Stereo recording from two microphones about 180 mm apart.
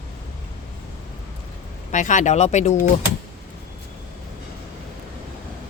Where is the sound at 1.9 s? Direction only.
45° left (ahead or behind).